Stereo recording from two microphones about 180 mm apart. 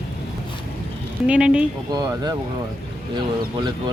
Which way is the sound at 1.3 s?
5° right (ahead or behind).